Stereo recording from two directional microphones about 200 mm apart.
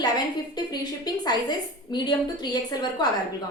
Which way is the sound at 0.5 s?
20° left (ahead or behind).